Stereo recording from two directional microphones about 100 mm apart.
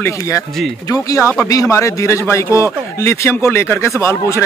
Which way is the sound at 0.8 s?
35° left (ahead or behind).